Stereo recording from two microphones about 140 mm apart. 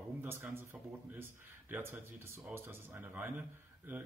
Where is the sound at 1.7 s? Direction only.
15° right (ahead or behind).